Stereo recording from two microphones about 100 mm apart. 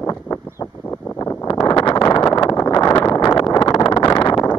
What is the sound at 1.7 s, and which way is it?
Vehicle, 45° left (ahead or behind).